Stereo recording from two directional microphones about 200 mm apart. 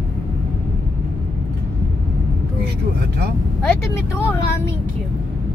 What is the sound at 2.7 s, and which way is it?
Speech, 55° right (ahead or behind).